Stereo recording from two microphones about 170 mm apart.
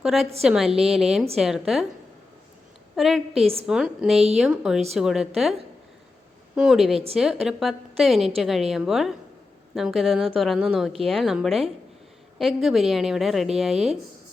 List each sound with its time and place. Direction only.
0.0 s a woman's voice: centre (ahead or behind)
2.9 s a woman's voice: centre (ahead or behind)
3.3 s a woman's voice: 35° right (ahead or behind)
3.7 s a woman's voice: 5° right (ahead or behind)
6.6 s a woman's voice: centre (ahead or behind)